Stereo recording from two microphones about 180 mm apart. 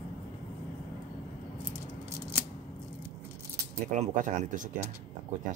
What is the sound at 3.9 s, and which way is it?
Speech, 40° right (ahead or behind).